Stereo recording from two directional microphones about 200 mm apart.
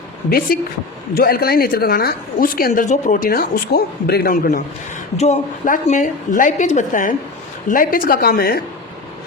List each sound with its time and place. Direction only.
0.3 s a woman's voice: 50° left (ahead or behind)
5.1 s a woman's voice: 35° left (ahead or behind); by 8.6 s 50° left (ahead or behind)